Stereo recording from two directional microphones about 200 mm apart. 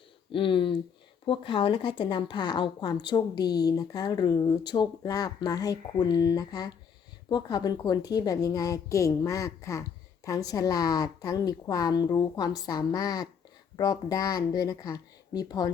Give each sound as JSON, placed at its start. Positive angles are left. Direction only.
{"t": 0.3, "sound": "a woman's voice", "side_deg": 25}